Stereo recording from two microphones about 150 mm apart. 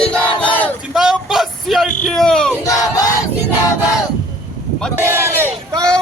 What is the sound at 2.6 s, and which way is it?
Music, 20° left (ahead or behind).